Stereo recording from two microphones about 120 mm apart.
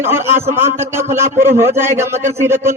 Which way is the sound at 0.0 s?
20° right (ahead or behind).